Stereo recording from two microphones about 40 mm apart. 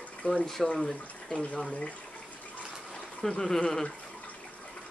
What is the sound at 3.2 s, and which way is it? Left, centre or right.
Speech, centre.